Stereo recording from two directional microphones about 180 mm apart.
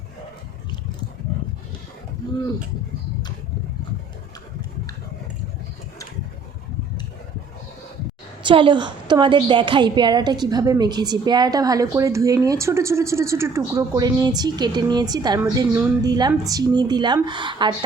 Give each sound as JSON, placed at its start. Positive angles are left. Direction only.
{"t": 8.4, "sound": "a woman's voice", "side_deg": -25}